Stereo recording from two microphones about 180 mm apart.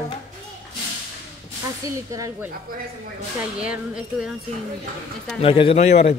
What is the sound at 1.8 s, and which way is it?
Speech, 20° right (ahead or behind).